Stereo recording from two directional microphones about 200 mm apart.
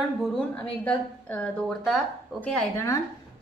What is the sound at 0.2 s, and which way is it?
A woman's voice, 5° left (ahead or behind).